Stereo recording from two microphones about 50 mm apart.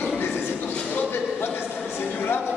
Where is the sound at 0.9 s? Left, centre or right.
Left.